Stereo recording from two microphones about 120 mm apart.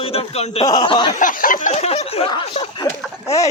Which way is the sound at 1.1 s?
90° left.